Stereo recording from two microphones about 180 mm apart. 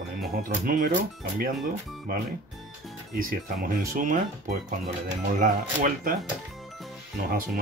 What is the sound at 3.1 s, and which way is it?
Speech, 50° right (ahead or behind).